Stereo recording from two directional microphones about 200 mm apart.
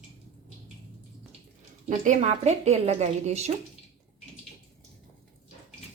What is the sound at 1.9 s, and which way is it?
Speech, 35° right (ahead or behind).